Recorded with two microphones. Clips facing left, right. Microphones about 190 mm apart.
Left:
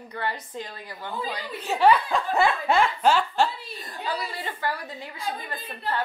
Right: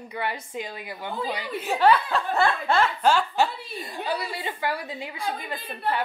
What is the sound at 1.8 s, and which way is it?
Speech, 10° left (ahead or behind).